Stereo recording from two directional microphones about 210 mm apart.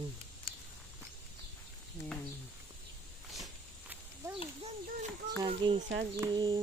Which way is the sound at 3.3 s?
5° right (ahead or behind).